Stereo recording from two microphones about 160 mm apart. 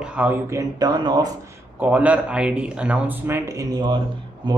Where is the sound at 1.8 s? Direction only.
10° right (ahead or behind); by 4.6 s 30° right (ahead or behind).